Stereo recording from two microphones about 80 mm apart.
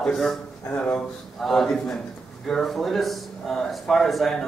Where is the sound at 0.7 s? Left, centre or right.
Centre.